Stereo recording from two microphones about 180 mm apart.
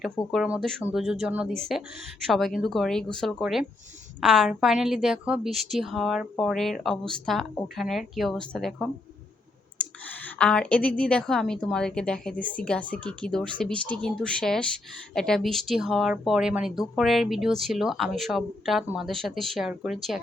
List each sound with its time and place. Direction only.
0.0 s a woman's voice: centre (ahead or behind)
10.2 s a woman's voice: 5° left (ahead or behind)